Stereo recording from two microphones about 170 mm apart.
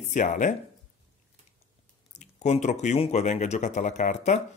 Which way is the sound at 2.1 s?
45° left (ahead or behind).